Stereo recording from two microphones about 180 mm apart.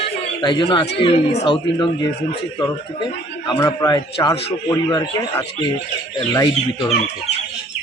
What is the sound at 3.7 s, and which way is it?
A man's voice, 20° left (ahead or behind).